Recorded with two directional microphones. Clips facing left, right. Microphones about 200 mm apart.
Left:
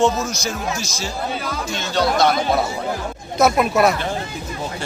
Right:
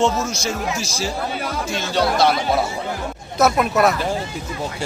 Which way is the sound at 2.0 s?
5° right (ahead or behind).